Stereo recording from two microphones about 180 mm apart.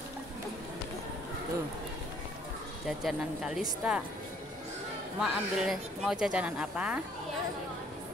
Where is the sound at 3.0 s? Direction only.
Centre (ahead or behind).